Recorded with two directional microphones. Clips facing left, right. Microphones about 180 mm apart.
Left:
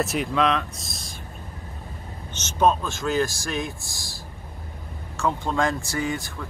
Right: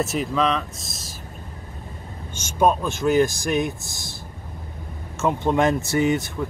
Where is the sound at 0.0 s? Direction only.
Centre (ahead or behind).